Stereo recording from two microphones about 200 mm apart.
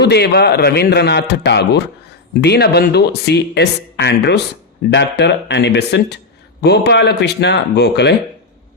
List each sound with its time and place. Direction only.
0.0 s speech: 55° left (ahead or behind)